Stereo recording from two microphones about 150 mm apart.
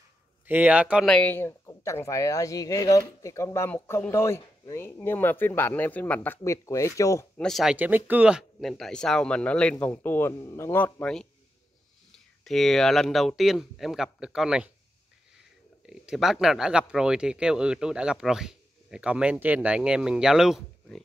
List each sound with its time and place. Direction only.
0.5 s speech: 10° right (ahead or behind)
1.0 s speech: 10° left (ahead or behind)
7.3 s speech: centre (ahead or behind)
7.7 s speech: 10° right (ahead or behind)
15.9 s speech: 5° right (ahead or behind)